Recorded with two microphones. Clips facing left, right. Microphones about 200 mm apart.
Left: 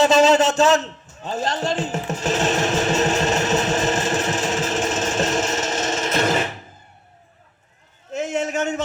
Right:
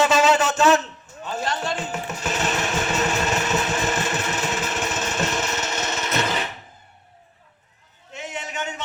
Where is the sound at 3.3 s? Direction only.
45° left (ahead or behind).